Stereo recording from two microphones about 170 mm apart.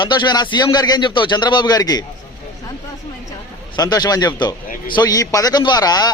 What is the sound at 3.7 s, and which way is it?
Speech, 25° left (ahead or behind).